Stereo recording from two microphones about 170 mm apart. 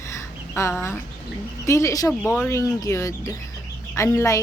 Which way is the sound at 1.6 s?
15° left (ahead or behind).